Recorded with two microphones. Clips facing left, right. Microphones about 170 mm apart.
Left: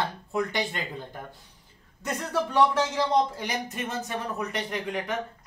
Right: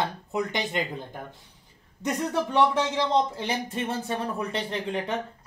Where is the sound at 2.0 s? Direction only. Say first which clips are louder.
Right 2 dB; 20° right (ahead or behind).